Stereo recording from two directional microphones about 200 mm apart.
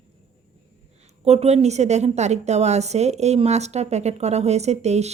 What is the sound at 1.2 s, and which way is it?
A woman's voice, 30° right (ahead or behind).